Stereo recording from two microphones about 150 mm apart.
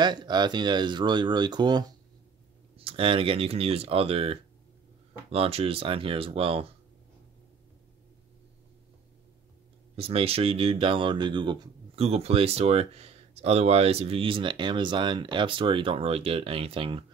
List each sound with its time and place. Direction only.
0.0 s speech: 30° right (ahead or behind)
9.9 s speech: 40° right (ahead or behind)
12.0 s speech: 45° right (ahead or behind)